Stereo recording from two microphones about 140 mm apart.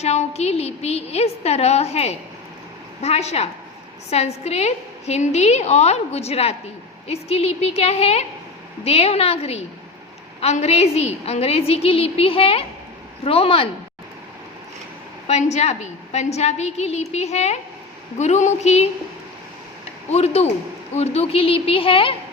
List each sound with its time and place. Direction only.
0.0 s a woman's voice: 50° left (ahead or behind)
15.3 s a woman's voice: 55° left (ahead or behind)
20.1 s a woman's voice: 50° left (ahead or behind)